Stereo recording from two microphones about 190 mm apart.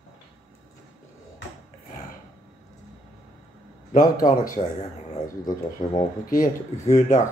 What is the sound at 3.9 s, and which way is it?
Speech, 45° left (ahead or behind).